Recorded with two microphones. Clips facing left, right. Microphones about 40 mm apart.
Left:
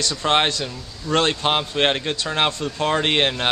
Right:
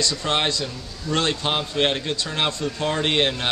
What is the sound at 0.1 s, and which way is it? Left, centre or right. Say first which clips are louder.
A man's voice: left 4 dB; left.